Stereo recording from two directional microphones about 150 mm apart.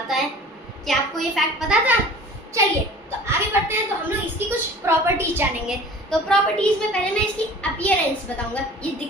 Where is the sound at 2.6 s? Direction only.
20° right (ahead or behind).